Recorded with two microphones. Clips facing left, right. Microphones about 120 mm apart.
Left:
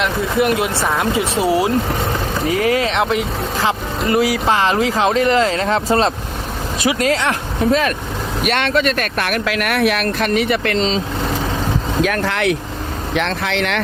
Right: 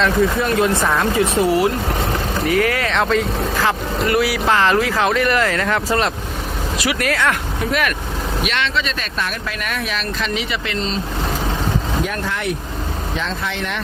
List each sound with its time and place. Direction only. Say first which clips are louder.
0.4 s speech: even; 15° left (ahead or behind)
8.4 s speech: left 7 dB; 50° left (ahead or behind)
10.8 s speech: left 5 dB; 90° left
12.0 s speech: left 5 dB; 80° left